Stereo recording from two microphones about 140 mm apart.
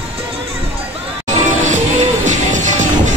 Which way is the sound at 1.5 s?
60° right (ahead or behind).